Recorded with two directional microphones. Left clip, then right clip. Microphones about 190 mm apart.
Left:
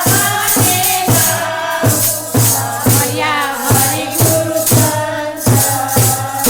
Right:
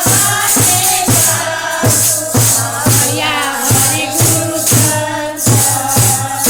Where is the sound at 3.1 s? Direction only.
Centre (ahead or behind).